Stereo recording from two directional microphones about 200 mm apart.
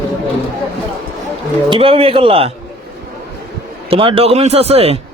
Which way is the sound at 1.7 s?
25° right (ahead or behind).